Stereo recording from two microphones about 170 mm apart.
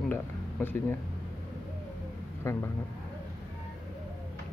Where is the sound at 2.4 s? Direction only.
15° left (ahead or behind).